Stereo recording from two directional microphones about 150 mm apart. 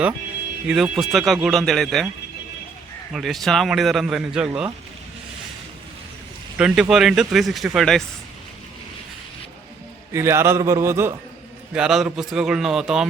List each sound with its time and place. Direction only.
0.7 s a man's voice: centre (ahead or behind)
3.1 s a man's voice: centre (ahead or behind)
6.6 s a man's voice: 5° right (ahead or behind)
10.1 s a man's voice: 15° right (ahead or behind)
11.7 s a man's voice: 5° right (ahead or behind)